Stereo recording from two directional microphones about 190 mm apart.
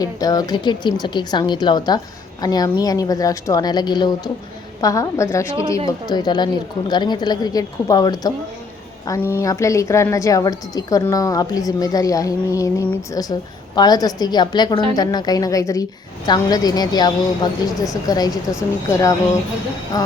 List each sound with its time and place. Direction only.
0.0 s a woman's voice: 20° left (ahead or behind)